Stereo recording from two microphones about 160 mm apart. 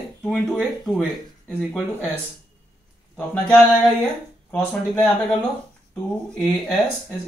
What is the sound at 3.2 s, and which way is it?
Speech, 10° left (ahead or behind).